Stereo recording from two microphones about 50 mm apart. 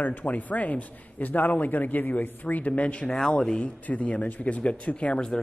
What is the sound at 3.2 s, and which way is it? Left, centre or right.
Speech, centre.